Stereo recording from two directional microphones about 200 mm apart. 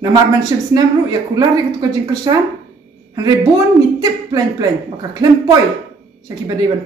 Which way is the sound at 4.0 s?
20° right (ahead or behind).